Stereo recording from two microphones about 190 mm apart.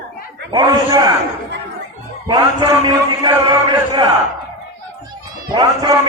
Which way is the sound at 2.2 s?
20° right (ahead or behind).